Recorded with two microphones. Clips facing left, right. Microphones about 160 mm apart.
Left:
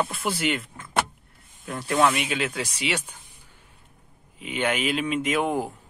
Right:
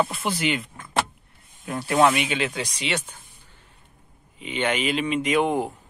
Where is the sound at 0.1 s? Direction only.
Centre (ahead or behind).